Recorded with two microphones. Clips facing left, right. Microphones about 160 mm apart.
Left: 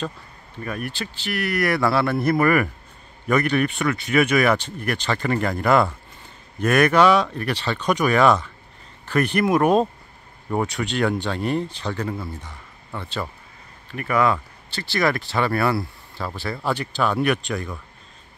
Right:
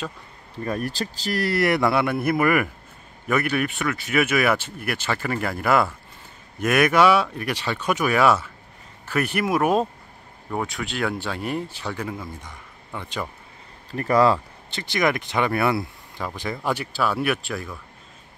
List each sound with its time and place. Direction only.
0.7 s speech: 35° right (ahead or behind); by 12.2 s 10° right (ahead or behind)
12.4 s a sound: 10° right (ahead or behind)
13.9 s speech: 35° right (ahead or behind); by 17.7 s 5° right (ahead or behind)